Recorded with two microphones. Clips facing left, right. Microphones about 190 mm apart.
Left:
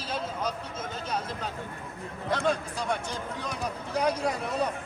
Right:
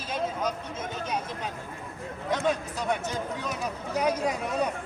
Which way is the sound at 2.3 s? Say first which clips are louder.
Even; 10° right (ahead or behind).